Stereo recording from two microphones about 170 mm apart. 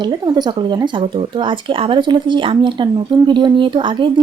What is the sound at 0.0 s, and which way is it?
Speech, 25° right (ahead or behind).